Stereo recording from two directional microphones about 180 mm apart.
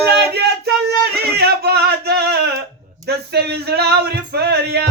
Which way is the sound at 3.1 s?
65° right (ahead or behind).